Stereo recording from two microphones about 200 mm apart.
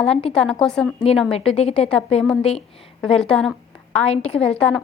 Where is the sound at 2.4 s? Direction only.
30° left (ahead or behind).